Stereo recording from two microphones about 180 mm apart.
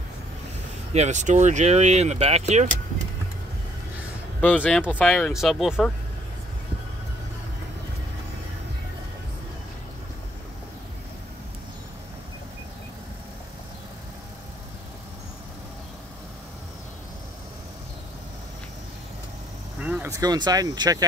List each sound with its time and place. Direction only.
0.9 s speech: 40° right (ahead or behind)
4.4 s speech: 10° left (ahead or behind)
19.8 s vehicle: 5° right (ahead or behind)
20.1 s speech: 20° right (ahead or behind)